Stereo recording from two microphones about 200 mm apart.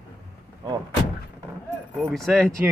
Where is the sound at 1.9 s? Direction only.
Centre (ahead or behind).